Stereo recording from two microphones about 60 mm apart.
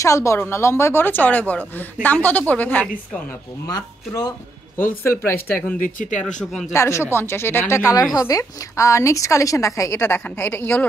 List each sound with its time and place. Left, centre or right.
0.0 s a woman's voice: left
3.6 s speech: left
4.7 s a woman's voice: left
5.7 s speech: centre
6.7 s a woman's voice: left
10.0 s a woman's voice: left